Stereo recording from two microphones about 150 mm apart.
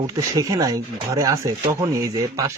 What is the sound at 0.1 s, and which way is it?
Speech, 20° right (ahead or behind).